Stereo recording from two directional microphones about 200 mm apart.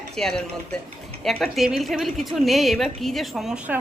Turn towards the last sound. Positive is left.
turn(degrees=-5)  # may be behind; listen again after turning